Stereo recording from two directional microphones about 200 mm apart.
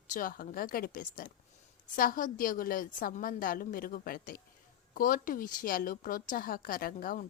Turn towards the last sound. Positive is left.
turn(degrees=45)  # may be behind; listen again after turning